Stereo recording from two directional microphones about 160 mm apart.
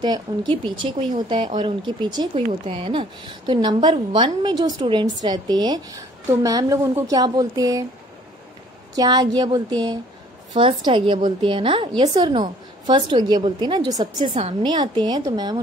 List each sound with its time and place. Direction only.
0.0 s speech: 30° right (ahead or behind)
8.9 s speech: 25° right (ahead or behind)